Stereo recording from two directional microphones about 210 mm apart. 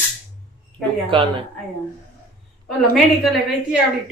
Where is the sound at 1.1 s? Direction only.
25° right (ahead or behind).